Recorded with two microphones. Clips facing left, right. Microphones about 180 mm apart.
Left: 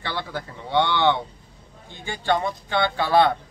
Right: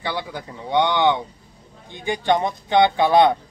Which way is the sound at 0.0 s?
15° right (ahead or behind).